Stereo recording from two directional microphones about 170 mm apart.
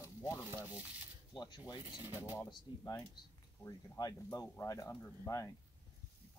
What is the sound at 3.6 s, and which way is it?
Speech, 20° left (ahead or behind).